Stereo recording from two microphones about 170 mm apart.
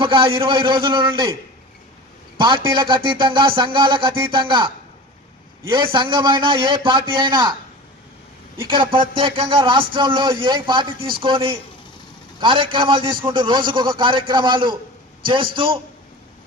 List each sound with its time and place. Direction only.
0.0 s speech: 30° right (ahead or behind)
2.7 s speech: 30° right (ahead or behind)
5.7 s speech: 30° right (ahead or behind)
8.6 s a man's voice: 30° right (ahead or behind)